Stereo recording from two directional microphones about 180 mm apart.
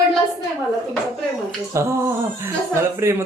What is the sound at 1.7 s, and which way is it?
Speech, 15° right (ahead or behind).